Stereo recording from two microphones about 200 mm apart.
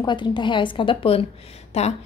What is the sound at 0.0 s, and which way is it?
A woman's voice, 25° left (ahead or behind).